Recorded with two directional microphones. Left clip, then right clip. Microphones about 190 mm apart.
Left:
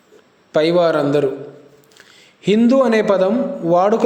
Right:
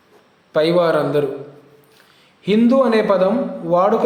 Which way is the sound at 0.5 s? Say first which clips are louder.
Left 1 dB; 25° left (ahead or behind).